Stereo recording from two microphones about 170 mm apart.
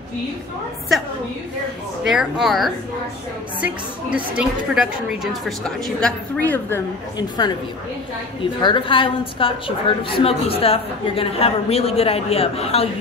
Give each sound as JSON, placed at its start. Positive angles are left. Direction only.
{"t": 2.0, "sound": "a woman's voice", "side_deg": -5}
{"t": 4.4, "sound": "a woman's voice", "side_deg": -5}
{"t": 7.2, "sound": "a woman's voice", "side_deg": 25}